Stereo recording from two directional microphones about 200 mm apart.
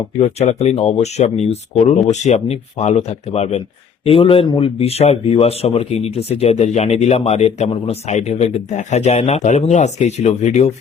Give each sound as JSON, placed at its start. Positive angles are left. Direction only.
{"t": 0.2, "sound": "a man's voice", "side_deg": 35}